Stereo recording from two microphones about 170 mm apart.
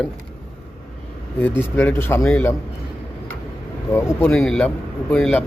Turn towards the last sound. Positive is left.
turn(degrees=5)  # may be behind; listen again after turning